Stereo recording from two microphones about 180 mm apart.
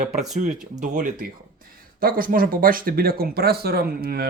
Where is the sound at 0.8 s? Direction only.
45° right (ahead or behind).